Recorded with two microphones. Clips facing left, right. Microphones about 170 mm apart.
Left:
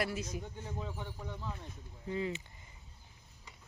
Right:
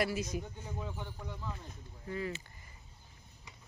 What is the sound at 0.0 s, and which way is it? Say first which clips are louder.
Speech: right 3 dB; 10° right (ahead or behind).